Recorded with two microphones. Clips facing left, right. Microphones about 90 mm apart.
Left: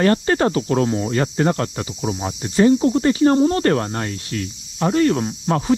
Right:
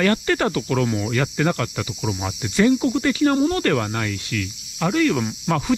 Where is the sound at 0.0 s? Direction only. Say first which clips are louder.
Left 3 dB; 35° left (ahead or behind).